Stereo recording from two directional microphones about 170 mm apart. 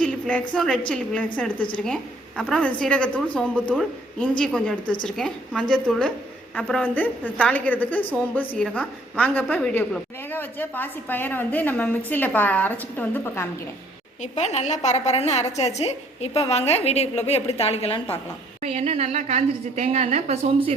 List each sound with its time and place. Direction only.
0.0 s a woman's voice: 5° left (ahead or behind)
14.2 s a woman's voice: 40° left (ahead or behind)
18.6 s a woman's voice: 35° right (ahead or behind)